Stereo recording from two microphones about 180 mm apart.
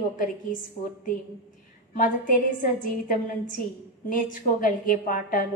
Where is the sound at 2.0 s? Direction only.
45° left (ahead or behind).